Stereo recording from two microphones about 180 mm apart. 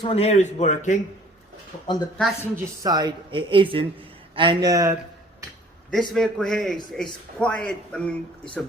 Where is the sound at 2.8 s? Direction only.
20° right (ahead or behind).